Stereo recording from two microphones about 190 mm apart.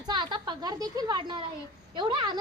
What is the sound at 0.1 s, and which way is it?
A woman's voice, 25° right (ahead or behind).